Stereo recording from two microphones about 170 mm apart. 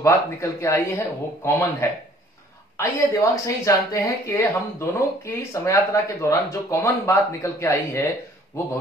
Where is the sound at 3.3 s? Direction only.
20° left (ahead or behind).